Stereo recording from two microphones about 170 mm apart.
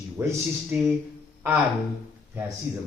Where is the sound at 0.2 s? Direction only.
15° right (ahead or behind).